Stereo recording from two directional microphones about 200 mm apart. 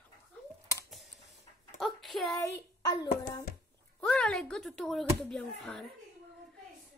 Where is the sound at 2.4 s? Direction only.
15° left (ahead or behind).